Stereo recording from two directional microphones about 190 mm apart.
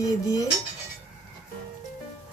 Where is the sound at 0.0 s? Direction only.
15° left (ahead or behind).